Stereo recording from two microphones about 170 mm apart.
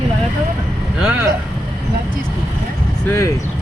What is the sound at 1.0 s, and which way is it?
Vehicle, 10° right (ahead or behind).